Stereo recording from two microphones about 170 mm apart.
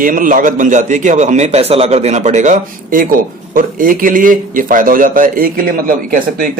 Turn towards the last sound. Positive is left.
turn(degrees=-55)  # may be behind; listen again after turning